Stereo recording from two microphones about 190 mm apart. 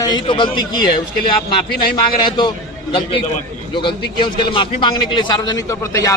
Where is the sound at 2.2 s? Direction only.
25° left (ahead or behind).